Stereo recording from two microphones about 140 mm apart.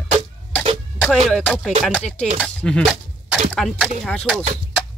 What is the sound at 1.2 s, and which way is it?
Speech, 5° left (ahead or behind).